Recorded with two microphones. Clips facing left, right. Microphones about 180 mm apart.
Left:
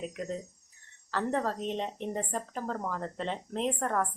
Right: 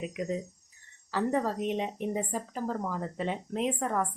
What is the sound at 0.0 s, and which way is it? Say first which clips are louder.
Speech: right 3 dB; 5° right (ahead or behind).